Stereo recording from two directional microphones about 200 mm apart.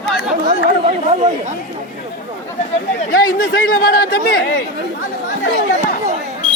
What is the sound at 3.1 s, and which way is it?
Speech, 50° left (ahead or behind).